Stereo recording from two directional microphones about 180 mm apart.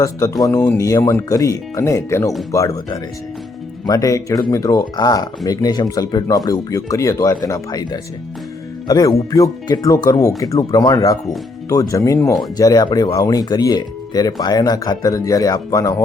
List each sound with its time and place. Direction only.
0.4 s speech: 15° left (ahead or behind)
8.9 s speech: 20° left (ahead or behind)